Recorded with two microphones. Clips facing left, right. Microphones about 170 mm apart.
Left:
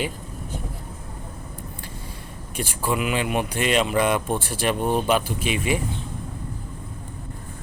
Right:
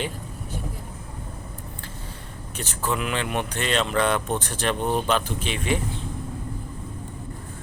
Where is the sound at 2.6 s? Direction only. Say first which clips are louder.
Left 2 dB; 10° left (ahead or behind).